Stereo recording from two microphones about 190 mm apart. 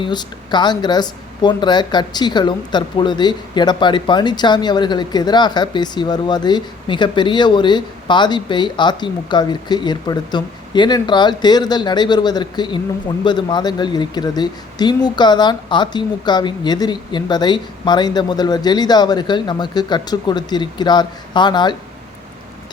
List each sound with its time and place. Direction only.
0.0 s speech: 25° left (ahead or behind)